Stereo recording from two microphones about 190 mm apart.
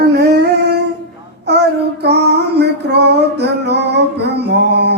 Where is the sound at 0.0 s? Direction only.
60° right (ahead or behind).